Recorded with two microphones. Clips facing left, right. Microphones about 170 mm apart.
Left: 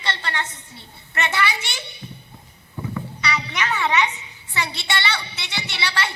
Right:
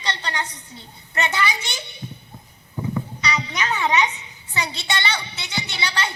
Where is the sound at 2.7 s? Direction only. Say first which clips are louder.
Right 3 dB; 20° right (ahead or behind).